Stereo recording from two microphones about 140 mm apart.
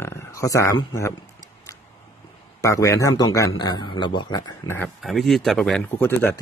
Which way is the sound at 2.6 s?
20° left (ahead or behind).